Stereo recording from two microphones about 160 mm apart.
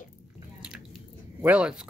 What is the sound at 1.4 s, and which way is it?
Speech, 5° right (ahead or behind).